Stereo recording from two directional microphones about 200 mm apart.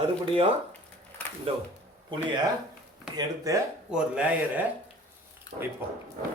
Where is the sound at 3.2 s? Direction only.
15° right (ahead or behind).